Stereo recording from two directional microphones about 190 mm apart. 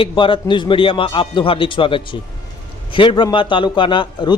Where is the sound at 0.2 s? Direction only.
25° left (ahead or behind).